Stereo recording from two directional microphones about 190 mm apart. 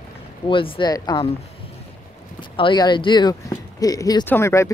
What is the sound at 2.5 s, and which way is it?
Speech, 25° left (ahead or behind).